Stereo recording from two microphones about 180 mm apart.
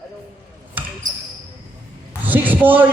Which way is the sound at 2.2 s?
10° right (ahead or behind).